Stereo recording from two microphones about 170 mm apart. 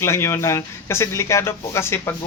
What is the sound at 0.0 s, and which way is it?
Speech, 15° left (ahead or behind).